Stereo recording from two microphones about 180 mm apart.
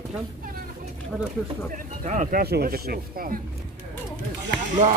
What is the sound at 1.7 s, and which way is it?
Speech, 45° right (ahead or behind).